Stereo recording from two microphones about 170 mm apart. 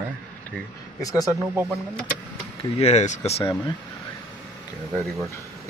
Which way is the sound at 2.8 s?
40° left (ahead or behind).